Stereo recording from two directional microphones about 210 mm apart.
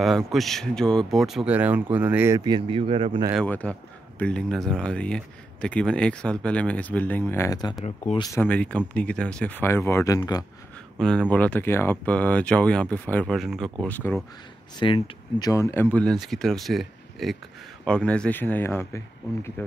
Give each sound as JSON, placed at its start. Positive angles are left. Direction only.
{"t": 0.0, "sound": "speech", "side_deg": 0}
{"t": 3.3, "sound": "speech", "side_deg": 5}
{"t": 8.4, "sound": "speech", "side_deg": 5}
{"t": 11.0, "sound": "speech", "side_deg": 5}
{"t": 14.8, "sound": "speech", "side_deg": 25}